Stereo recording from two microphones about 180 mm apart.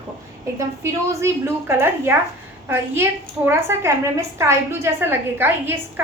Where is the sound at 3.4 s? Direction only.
15° right (ahead or behind).